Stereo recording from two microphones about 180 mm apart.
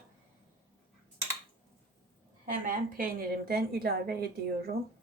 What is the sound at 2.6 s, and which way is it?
A woman's voice, 55° right (ahead or behind).